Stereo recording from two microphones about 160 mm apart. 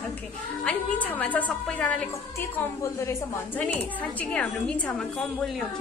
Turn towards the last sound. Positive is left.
turn(degrees=5)  # may be behind; listen again after turning